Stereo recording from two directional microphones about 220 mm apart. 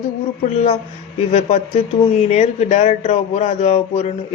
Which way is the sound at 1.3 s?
30° left (ahead or behind).